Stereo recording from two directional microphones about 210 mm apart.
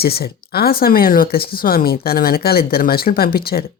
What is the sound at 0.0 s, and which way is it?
A woman's voice, 45° left (ahead or behind).